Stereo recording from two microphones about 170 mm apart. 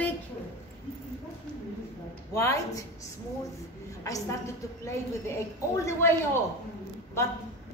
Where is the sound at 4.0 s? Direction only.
15° left (ahead or behind).